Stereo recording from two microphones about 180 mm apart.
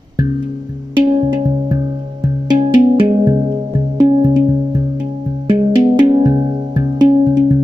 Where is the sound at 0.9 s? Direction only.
25° right (ahead or behind).